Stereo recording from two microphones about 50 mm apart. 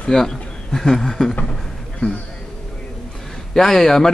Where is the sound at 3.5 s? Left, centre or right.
Centre.